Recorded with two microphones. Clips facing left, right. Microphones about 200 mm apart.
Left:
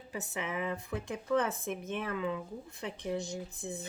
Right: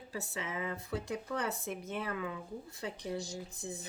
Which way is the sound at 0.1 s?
20° left (ahead or behind).